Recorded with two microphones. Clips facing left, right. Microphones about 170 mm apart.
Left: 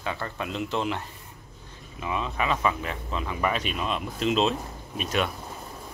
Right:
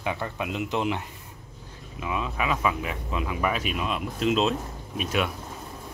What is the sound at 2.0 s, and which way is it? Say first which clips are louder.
Speech: even; 5° right (ahead or behind).